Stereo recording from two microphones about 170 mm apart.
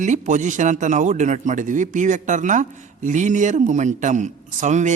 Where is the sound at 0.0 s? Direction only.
45° right (ahead or behind).